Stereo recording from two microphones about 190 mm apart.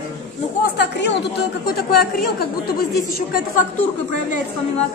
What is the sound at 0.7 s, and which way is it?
A woman's voice, 60° left (ahead or behind).